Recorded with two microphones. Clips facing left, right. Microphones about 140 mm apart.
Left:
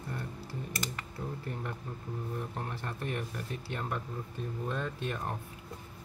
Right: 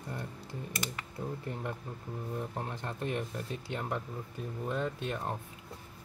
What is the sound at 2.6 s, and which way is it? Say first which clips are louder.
Speech: right 1 dB; 20° right (ahead or behind).